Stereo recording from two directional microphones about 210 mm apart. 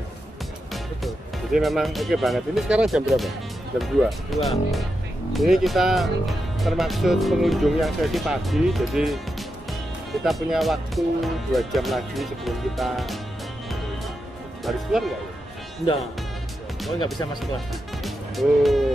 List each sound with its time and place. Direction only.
1.0 s speech: centre (ahead or behind)
10.2 s speech: centre (ahead or behind)
14.6 s speech: centre (ahead or behind)
17.0 s speech: 20° left (ahead or behind)
18.0 s music: centre (ahead or behind)